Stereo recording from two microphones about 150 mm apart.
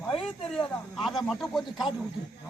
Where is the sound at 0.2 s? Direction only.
5° left (ahead or behind).